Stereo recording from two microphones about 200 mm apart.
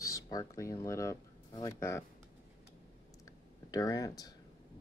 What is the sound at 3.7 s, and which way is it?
Speech, 15° left (ahead or behind).